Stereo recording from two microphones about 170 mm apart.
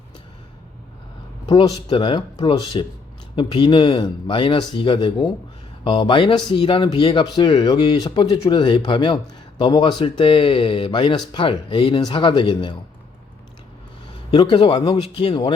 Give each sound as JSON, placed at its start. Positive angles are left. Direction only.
{"t": 1.5, "sound": "speech", "side_deg": 30}
{"t": 14.3, "sound": "speech", "side_deg": 30}